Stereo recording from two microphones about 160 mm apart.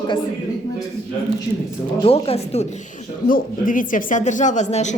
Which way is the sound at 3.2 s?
60° left (ahead or behind).